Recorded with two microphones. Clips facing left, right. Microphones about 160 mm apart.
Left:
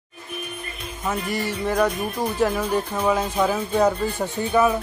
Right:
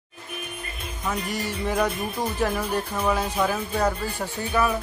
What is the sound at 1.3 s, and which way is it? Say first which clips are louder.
Music: left 3 dB; 10° left (ahead or behind).